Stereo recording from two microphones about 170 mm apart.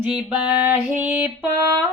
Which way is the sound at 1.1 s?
10° right (ahead or behind).